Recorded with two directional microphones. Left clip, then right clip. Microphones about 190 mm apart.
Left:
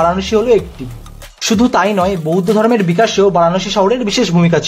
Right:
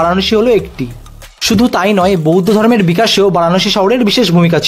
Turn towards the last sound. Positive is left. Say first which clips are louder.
# right 2 dB
turn(degrees=-20)  # may be behind; listen again after turning